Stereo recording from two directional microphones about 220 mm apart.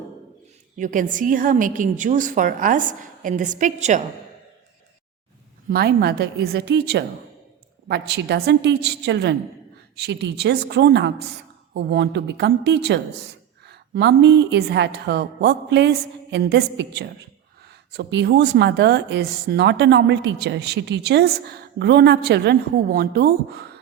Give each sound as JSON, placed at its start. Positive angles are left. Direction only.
{"t": 0.8, "sound": "a woman's voice", "side_deg": -35}
{"t": 5.6, "sound": "a woman's voice", "side_deg": -45}